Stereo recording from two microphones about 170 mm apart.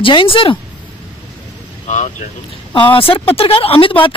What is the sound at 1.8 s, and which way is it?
Speech, 45° left (ahead or behind).